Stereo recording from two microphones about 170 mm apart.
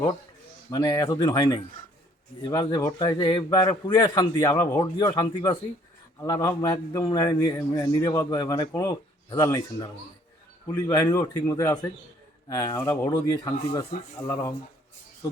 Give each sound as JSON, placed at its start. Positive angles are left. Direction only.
{"t": 0.7, "sound": "a man's voice", "side_deg": 25}
{"t": 10.7, "sound": "a man's voice", "side_deg": 20}
{"t": 15.2, "sound": "music", "side_deg": 20}